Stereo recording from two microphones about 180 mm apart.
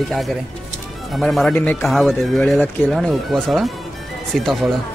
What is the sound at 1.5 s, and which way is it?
Speech, 10° left (ahead or behind).